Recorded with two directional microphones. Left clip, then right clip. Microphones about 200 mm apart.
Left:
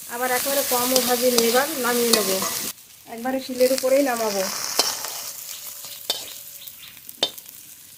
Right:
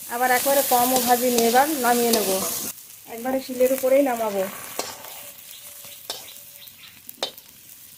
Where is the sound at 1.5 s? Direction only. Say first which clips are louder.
Right 3 dB; 35° right (ahead or behind).